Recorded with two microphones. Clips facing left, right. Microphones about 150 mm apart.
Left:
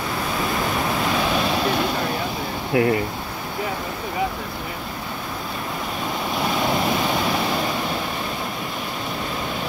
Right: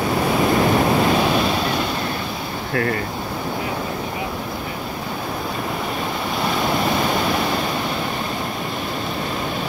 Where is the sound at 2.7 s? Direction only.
20° left (ahead or behind).